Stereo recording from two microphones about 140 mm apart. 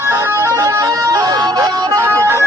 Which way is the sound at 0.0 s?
15° right (ahead or behind).